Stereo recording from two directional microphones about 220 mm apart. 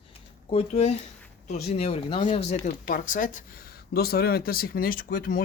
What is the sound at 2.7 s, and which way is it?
Speech, 40° left (ahead or behind).